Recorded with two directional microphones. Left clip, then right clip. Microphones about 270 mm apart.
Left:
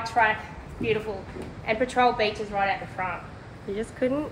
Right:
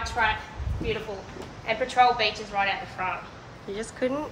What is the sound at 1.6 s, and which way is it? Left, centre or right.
A woman's voice, left.